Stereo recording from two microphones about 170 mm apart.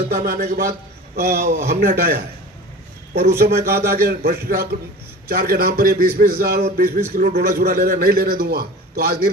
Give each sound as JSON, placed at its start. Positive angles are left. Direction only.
{"t": 0.1, "sound": "a man's voice", "side_deg": -60}
{"t": 1.1, "sound": "a man's voice", "side_deg": -70}
{"t": 1.7, "sound": "a man's voice", "side_deg": -55}
{"t": 3.3, "sound": "a man's voice", "side_deg": -65}